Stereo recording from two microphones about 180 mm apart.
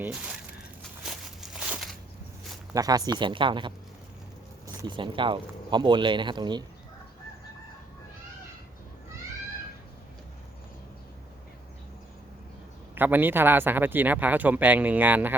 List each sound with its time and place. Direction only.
1.0 s a sound: 5° right (ahead or behind)
2.7 s speech: 20° right (ahead or behind)
4.8 s speech: 25° right (ahead or behind)
13.0 s speech: 10° right (ahead or behind)